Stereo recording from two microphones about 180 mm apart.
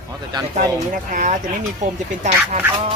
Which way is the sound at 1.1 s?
45° right (ahead or behind).